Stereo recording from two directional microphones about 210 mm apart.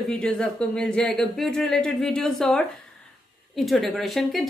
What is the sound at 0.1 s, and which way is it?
A woman's voice, 5° left (ahead or behind).